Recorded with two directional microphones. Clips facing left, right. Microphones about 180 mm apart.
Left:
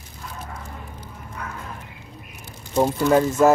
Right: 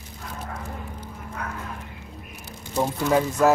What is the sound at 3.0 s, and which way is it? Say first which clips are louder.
Speech: left 3 dB; 5° right (ahead or behind).